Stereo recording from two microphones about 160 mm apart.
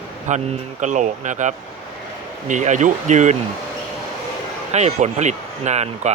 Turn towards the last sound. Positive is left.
turn(degrees=-45)  # may be behind; listen again after turning